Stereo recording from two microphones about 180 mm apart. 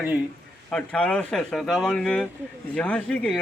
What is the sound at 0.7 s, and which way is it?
A man's voice, 5° left (ahead or behind).